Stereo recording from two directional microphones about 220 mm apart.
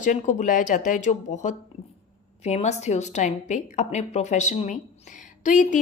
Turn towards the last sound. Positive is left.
turn(degrees=35)  # may be behind; listen again after turning